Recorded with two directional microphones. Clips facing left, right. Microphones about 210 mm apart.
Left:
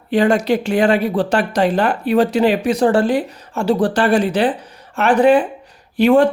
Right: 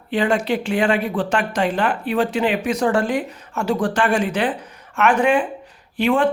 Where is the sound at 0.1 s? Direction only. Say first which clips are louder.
Left 5 dB; 40° left (ahead or behind).